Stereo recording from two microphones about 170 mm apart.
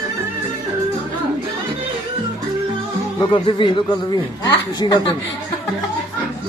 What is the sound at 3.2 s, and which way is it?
Speech, 30° left (ahead or behind).